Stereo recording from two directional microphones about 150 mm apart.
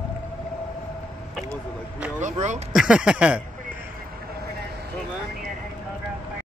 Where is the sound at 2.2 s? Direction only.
55° right (ahead or behind).